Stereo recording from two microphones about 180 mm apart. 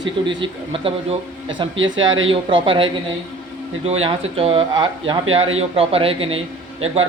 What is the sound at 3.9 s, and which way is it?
A man's voice, 35° right (ahead or behind).